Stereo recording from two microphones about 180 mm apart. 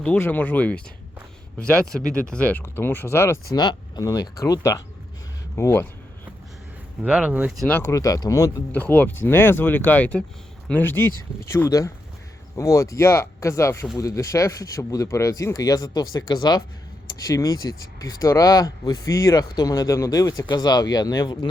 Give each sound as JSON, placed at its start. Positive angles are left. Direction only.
{"t": 0.0, "sound": "speech", "side_deg": 10}
{"t": 3.5, "sound": "speech", "side_deg": 25}
{"t": 7.0, "sound": "speech", "side_deg": -5}
{"t": 7.7, "sound": "speech", "side_deg": 15}